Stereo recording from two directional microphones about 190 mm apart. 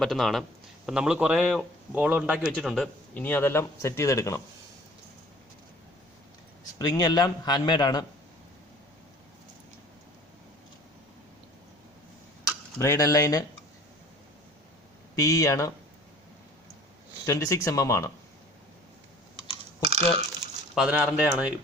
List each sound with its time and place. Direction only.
0.0 s a man's voice: centre (ahead or behind); by 4.4 s 15° left (ahead or behind)
6.7 s a man's voice: 20° left (ahead or behind)
12.8 s speech: 15° left (ahead or behind)
15.1 s speech: 15° left (ahead or behind)
17.2 s speech: 15° left (ahead or behind)
19.9 s speech: 30° right (ahead or behind)
20.7 s a man's voice: 5° right (ahead or behind)